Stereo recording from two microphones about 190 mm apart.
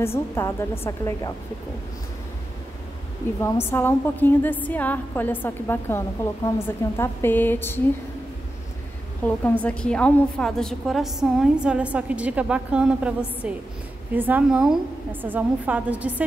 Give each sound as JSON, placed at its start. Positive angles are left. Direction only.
{"t": 0.0, "sound": "a woman's voice", "side_deg": 15}
{"t": 3.3, "sound": "a woman's voice", "side_deg": 15}
{"t": 9.4, "sound": "a woman's voice", "side_deg": 5}